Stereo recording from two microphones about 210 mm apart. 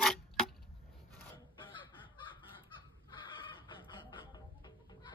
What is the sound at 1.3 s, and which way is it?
Crow, 25° left (ahead or behind).